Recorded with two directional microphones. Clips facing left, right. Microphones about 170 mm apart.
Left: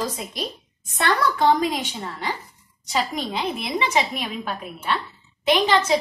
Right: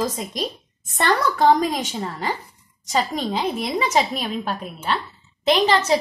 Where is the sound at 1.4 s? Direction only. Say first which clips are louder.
Right 4 dB; 40° right (ahead or behind).